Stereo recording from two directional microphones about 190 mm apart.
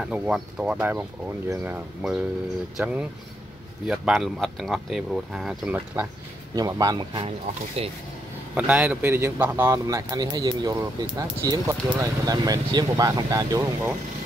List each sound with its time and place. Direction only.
0.0 s speech: 5° right (ahead or behind)
6.5 s speech: 20° right (ahead or behind)
8.5 s speech: 10° right (ahead or behind)